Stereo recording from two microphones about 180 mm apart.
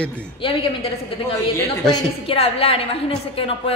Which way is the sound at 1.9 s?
30° left (ahead or behind).